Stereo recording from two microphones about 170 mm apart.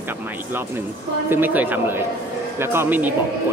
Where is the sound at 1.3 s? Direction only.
10° right (ahead or behind).